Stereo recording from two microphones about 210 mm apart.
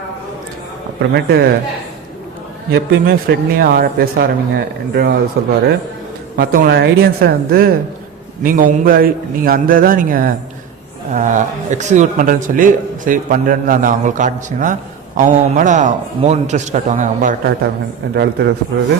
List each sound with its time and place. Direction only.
1.1 s speech: 50° right (ahead or behind)
2.7 s speech: 50° right (ahead or behind)
6.3 s a man's voice: 45° right (ahead or behind)